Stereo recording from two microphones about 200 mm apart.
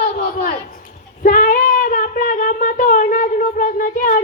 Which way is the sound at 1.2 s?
45° left (ahead or behind).